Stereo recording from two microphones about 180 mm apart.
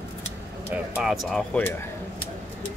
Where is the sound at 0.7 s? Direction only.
Centre (ahead or behind).